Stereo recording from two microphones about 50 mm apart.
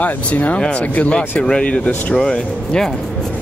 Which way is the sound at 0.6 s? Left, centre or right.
Centre.